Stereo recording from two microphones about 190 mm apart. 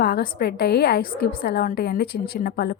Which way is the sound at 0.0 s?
55° left (ahead or behind).